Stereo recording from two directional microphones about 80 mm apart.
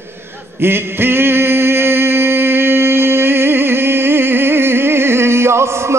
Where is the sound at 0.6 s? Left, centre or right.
Right.